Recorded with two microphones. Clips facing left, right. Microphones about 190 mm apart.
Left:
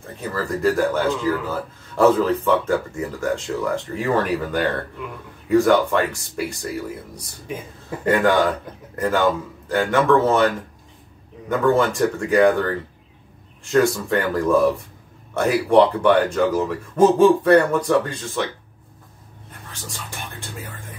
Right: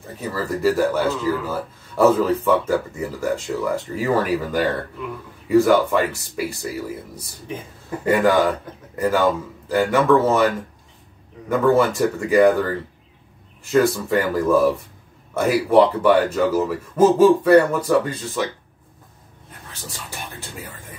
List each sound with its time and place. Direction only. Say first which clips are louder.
0.0 s speech: even; 5° right (ahead or behind)
8.0 s speech: right 1 dB; 5° right (ahead or behind)